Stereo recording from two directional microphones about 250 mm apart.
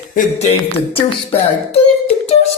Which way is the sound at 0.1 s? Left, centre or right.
Left.